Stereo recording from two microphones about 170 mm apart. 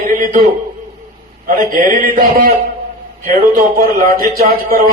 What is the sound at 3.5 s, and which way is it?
Speech, 60° right (ahead or behind).